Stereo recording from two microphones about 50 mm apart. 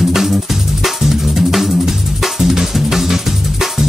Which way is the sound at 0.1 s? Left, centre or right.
Centre.